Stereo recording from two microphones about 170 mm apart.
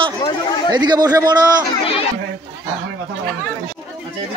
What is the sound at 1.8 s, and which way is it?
Chatter, 35° left (ahead or behind).